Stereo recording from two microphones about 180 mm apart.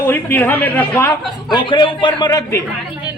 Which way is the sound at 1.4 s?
25° left (ahead or behind).